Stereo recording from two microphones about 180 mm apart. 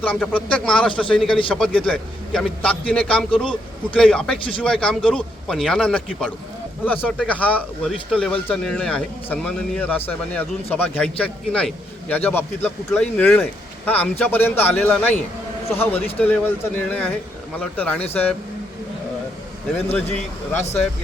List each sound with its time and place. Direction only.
0.0 s speech: 10° left (ahead or behind)
3.2 s speech: 30° left (ahead or behind)
3.9 s speech: 5° left (ahead or behind)
19.9 s speech: 10° left (ahead or behind)